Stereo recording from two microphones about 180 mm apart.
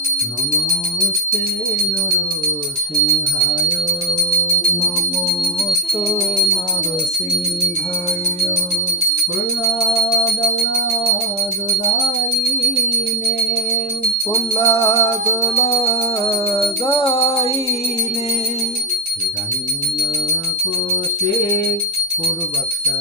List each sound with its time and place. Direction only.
14.5 s music: 15° left (ahead or behind)
15.8 s music: 30° left (ahead or behind)